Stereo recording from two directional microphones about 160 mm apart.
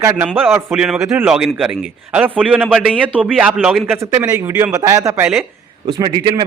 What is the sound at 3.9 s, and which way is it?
Speech, 15° right (ahead or behind).